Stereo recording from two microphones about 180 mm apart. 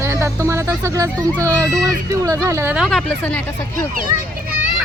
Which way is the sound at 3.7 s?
50° right (ahead or behind).